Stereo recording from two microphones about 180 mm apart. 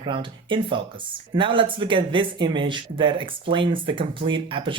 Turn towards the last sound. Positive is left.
turn(degrees=-25)  # may be behind; listen again after turning